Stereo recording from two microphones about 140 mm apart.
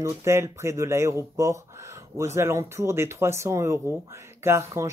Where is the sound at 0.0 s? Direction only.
20° right (ahead or behind).